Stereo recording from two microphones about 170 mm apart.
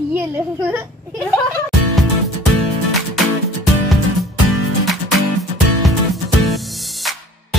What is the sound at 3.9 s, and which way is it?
Music, centre (ahead or behind).